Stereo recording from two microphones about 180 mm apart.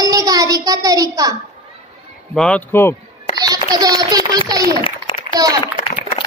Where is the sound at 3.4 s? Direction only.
20° right (ahead or behind).